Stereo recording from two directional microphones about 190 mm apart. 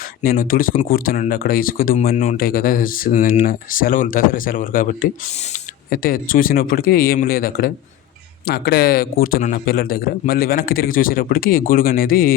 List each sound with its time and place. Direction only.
0.2 s speech: 50° left (ahead or behind)
5.9 s speech: 50° left (ahead or behind)